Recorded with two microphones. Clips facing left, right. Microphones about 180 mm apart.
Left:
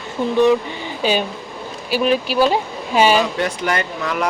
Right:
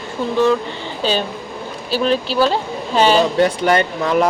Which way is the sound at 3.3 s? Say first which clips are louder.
Right 6 dB; 35° right (ahead or behind).